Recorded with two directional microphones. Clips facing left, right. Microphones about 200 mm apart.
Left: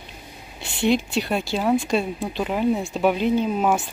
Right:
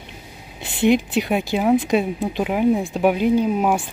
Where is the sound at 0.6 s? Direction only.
20° right (ahead or behind).